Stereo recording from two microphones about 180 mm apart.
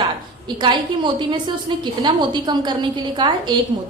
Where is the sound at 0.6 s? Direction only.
25° right (ahead or behind).